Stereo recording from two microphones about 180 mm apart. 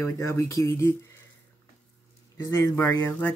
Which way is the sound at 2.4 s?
20° left (ahead or behind).